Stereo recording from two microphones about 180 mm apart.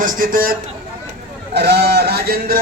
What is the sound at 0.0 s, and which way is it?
Speech, 50° right (ahead or behind).